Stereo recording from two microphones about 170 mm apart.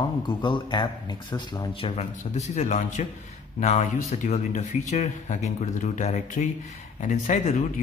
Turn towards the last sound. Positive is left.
turn(degrees=45)  # may be behind; listen again after turning